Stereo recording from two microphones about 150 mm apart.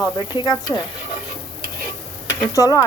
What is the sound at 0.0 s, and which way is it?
Speech, 25° left (ahead or behind).